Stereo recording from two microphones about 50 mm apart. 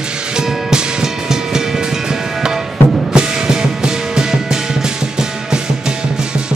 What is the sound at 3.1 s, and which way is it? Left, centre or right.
Music, centre.